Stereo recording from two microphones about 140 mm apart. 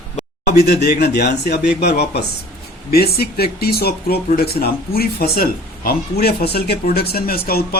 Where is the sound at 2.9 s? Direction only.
90° left.